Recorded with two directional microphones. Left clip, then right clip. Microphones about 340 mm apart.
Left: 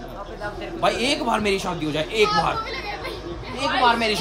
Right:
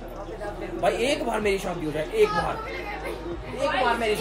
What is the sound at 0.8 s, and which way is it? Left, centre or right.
Speech, centre.